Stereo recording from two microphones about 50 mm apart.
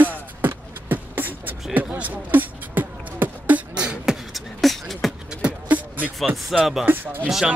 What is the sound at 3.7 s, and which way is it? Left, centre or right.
Beatboxing, centre.